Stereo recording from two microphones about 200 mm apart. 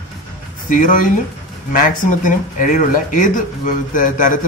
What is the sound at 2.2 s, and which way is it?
A man's voice, 40° left (ahead or behind).